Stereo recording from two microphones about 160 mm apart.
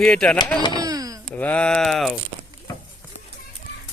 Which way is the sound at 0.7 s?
25° right (ahead or behind).